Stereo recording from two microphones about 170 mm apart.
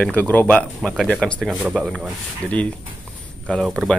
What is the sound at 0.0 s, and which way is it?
Speech, 10° left (ahead or behind).